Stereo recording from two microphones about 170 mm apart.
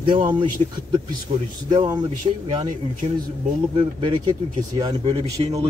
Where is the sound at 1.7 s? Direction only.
25° right (ahead or behind).